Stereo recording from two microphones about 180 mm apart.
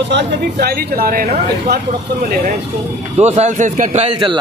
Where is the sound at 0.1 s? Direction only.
60° right (ahead or behind).